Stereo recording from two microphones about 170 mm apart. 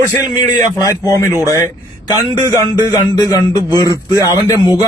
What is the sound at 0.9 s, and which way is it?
Speech, 20° left (ahead or behind).